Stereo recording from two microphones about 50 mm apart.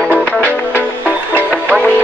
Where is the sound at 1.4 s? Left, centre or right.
Right.